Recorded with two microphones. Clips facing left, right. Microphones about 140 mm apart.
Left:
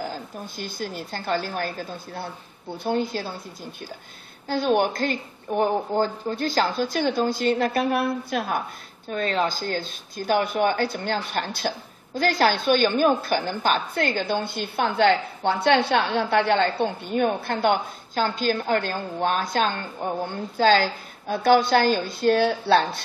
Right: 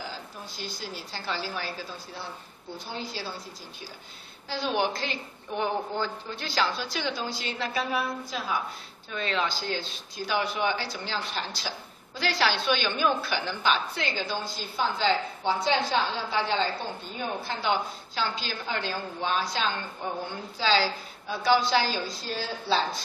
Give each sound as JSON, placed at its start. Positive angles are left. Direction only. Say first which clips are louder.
{"t": 0.0, "sound": "speech", "louder": "left 7 dB", "side_deg": 50}
{"t": 4.5, "sound": "speech", "louder": "left 6 dB", "side_deg": 50}
{"t": 9.1, "sound": "speech", "louder": "left 5 dB", "side_deg": 45}